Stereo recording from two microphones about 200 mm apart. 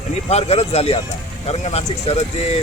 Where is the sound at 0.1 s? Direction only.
30° left (ahead or behind).